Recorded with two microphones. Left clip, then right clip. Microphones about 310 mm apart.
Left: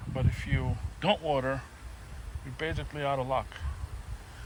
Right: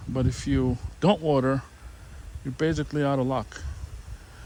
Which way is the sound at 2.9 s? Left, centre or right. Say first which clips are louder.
Right 4 dB; right.